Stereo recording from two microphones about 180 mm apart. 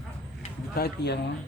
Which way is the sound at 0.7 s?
60° left (ahead or behind).